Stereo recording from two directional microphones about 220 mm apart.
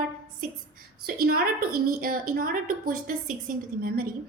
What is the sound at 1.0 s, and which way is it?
A woman's voice, 40° right (ahead or behind).